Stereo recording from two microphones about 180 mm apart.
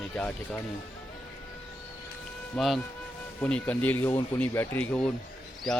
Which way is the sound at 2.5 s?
Centre (ahead or behind).